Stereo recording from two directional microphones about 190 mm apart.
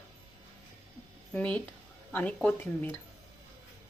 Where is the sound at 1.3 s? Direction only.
5° left (ahead or behind).